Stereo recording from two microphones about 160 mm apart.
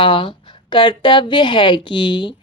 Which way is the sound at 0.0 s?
30° left (ahead or behind).